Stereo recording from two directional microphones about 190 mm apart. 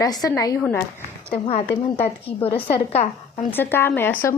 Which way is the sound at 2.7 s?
35° left (ahead or behind).